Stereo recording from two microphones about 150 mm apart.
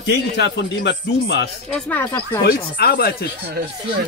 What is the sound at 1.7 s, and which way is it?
Speech, 15° left (ahead or behind).